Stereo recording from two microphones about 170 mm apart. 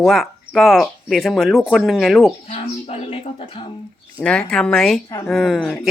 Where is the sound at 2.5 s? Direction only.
40° left (ahead or behind).